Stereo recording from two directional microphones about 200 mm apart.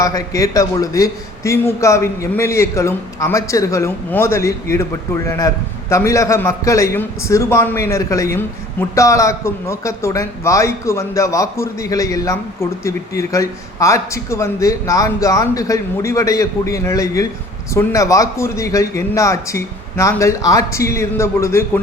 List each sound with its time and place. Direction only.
0.0 s a man's voice: 15° left (ahead or behind)